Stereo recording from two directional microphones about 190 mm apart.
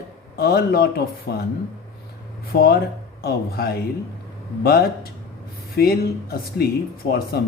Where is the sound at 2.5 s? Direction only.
55° left (ahead or behind).